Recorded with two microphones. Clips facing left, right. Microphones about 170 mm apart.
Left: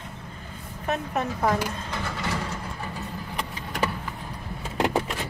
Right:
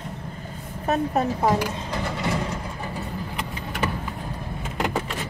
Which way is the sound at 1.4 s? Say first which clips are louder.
Right 3 dB; 20° right (ahead or behind).